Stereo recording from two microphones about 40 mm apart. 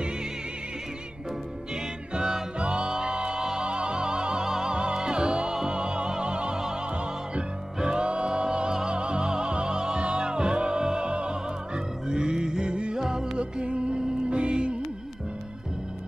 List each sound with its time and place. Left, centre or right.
2.1 s music: centre